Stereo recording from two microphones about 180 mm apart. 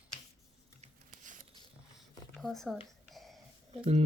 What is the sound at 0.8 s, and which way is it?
Scissors, 45° right (ahead or behind).